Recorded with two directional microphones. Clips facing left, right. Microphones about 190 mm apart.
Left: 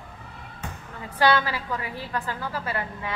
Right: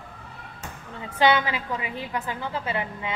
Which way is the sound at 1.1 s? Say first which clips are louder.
Right 1 dB; 20° right (ahead or behind).